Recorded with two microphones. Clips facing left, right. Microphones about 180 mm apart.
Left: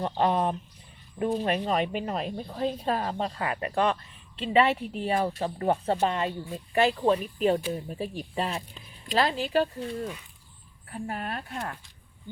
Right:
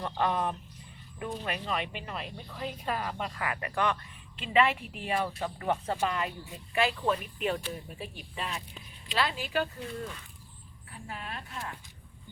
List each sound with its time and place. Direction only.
0.0 s speech: 30° left (ahead or behind)
10.0 s speech: 15° left (ahead or behind)
10.9 s speech: 55° left (ahead or behind)